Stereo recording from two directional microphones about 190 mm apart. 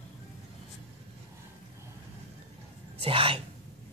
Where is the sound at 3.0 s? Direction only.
30° right (ahead or behind).